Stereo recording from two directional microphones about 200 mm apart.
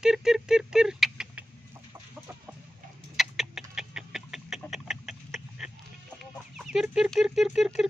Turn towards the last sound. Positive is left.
turn(degrees=0)  # may be behind; listen again after turning